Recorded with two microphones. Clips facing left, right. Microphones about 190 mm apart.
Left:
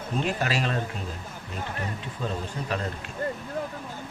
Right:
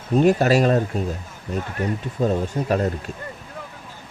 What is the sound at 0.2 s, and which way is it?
Speech, 45° right (ahead or behind).